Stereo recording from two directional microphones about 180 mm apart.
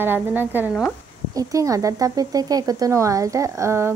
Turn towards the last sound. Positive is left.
turn(degrees=-15)  # may be behind; listen again after turning